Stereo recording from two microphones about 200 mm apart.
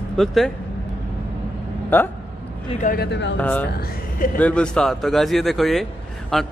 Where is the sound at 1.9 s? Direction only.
10° left (ahead or behind).